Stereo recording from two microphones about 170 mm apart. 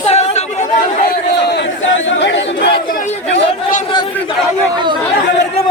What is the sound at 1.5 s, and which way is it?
Crowd, 90° left.